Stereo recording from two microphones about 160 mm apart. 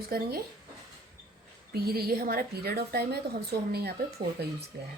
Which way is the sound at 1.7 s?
75° right (ahead or behind).